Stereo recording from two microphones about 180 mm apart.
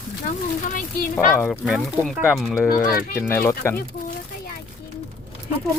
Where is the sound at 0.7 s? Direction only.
50° left (ahead or behind).